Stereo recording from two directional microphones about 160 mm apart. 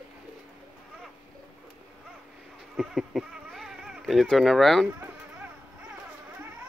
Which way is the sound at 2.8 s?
Centre (ahead or behind).